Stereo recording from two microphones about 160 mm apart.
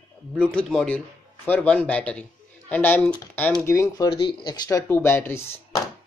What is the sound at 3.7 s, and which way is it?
Speech, 20° left (ahead or behind).